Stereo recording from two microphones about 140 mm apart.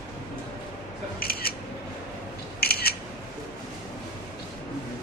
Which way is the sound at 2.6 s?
90° left.